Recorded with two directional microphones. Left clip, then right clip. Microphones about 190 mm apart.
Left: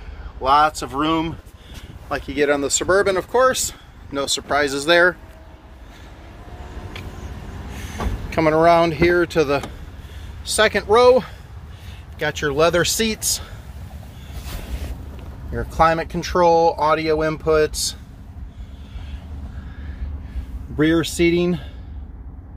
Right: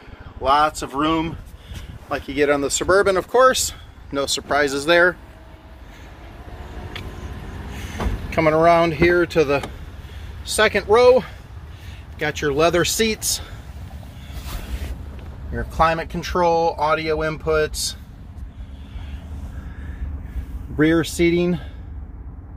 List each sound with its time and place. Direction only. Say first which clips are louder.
0.4 s speech: left 1 dB; 5° left (ahead or behind)
7.7 s vehicle: even; centre (ahead or behind)
8.3 s speech: even; 5° left (ahead or behind)
15.5 s speech: left 2 dB; 15° left (ahead or behind)
20.7 s speech: even; 5° right (ahead or behind)